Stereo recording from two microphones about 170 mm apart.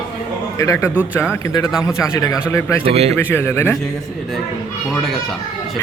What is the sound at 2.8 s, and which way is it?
Speech, 35° right (ahead or behind).